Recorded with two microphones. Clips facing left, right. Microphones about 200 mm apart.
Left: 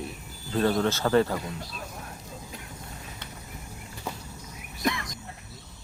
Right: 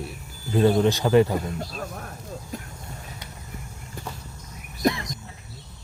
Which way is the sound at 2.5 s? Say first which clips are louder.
Right 7 dB; 45° right (ahead or behind).